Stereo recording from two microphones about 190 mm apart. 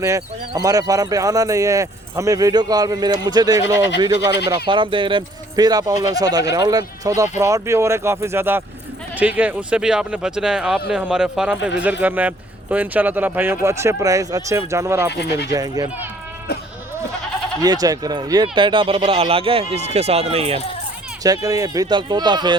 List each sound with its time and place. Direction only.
0.0 s speech: 15° right (ahead or behind)
17.6 s speech: 20° right (ahead or behind)
21.2 s speech: 20° right (ahead or behind)